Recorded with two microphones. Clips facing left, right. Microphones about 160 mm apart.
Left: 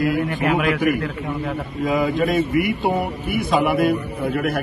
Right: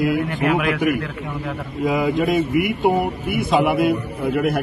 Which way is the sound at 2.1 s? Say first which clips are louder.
Even; 20° right (ahead or behind).